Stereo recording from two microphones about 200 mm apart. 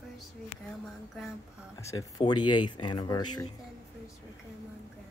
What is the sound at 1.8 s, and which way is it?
Speech, 15° left (ahead or behind).